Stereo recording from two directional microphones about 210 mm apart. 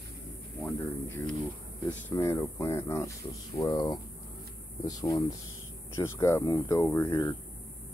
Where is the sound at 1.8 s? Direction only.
10° left (ahead or behind).